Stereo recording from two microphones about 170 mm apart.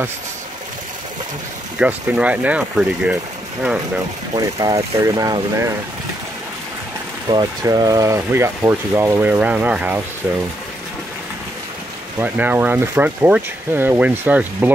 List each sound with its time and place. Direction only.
1.8 s speech: 10° right (ahead or behind)
4.3 s speech: 20° right (ahead or behind)
7.2 s speech: 25° right (ahead or behind); by 10.0 s 10° right (ahead or behind)
12.2 s speech: 10° right (ahead or behind)